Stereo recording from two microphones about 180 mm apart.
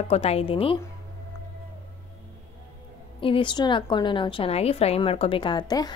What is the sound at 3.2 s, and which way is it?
A woman's voice, 30° left (ahead or behind).